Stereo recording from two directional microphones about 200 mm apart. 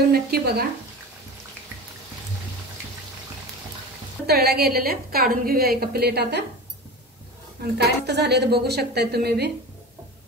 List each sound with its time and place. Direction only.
0.1 s a woman's voice: 50° right (ahead or behind)
4.3 s a woman's voice: 50° right (ahead or behind)
7.6 s a woman's voice: 55° right (ahead or behind)